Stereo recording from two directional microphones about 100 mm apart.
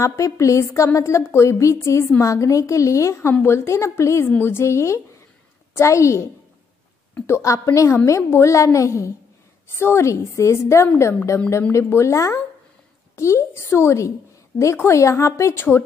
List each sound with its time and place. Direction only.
0.0 s a woman's voice: 30° left (ahead or behind)
7.2 s a woman's voice: 30° left (ahead or behind)